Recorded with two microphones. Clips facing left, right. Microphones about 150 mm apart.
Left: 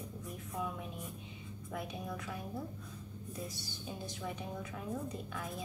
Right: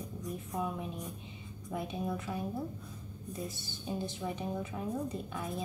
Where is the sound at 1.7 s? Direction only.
25° right (ahead or behind).